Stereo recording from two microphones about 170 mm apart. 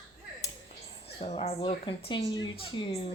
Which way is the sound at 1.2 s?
35° left (ahead or behind).